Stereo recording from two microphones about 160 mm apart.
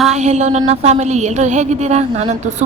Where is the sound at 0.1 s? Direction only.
45° right (ahead or behind).